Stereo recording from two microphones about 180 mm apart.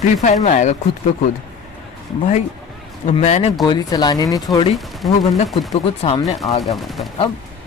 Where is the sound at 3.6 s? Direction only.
25° left (ahead or behind).